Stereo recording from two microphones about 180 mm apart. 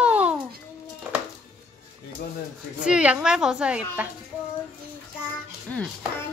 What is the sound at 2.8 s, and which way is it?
A woman's voice, 5° right (ahead or behind).